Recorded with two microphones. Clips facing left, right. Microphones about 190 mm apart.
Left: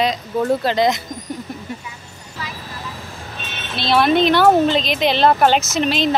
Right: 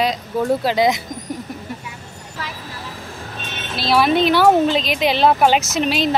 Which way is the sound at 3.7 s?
5° right (ahead or behind).